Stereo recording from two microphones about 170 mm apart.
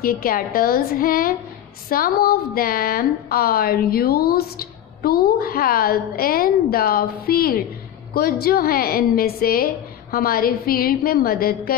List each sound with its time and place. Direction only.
0.0 s a woman's voice: 60° left (ahead or behind)